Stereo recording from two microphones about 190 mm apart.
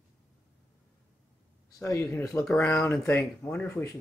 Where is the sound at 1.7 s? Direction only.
15° left (ahead or behind).